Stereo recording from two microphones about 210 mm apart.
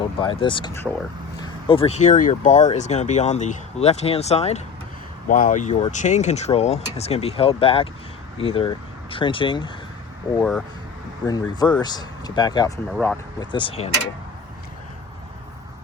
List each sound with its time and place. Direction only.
0.0 s speech: 25° left (ahead or behind)
11.3 s speech: 20° left (ahead or behind)
12.9 s speech: 5° left (ahead or behind)
13.4 s speech: 25° left (ahead or behind)